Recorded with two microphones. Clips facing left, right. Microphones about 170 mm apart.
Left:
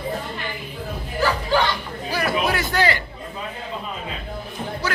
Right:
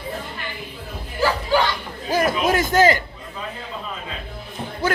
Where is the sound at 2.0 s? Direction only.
45° right (ahead or behind).